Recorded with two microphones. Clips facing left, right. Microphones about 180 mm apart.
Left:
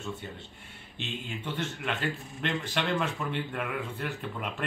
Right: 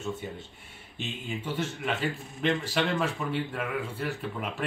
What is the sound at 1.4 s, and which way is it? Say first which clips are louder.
A man's voice: right 3 dB; 5° right (ahead or behind).